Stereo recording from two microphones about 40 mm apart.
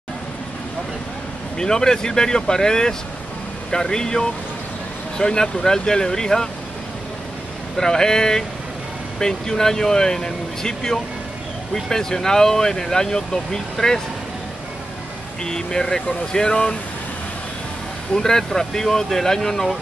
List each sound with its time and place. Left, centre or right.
1.6 s speech: centre
7.7 s speech: centre
15.4 s speech: centre
18.1 s speech: centre